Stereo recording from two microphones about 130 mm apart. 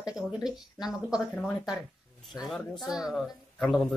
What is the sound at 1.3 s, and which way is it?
A woman's voice, 5° left (ahead or behind).